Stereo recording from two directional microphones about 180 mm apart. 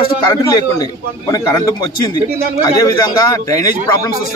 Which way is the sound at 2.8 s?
20° left (ahead or behind).